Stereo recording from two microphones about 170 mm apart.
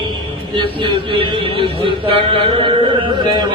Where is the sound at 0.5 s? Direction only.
30° right (ahead or behind).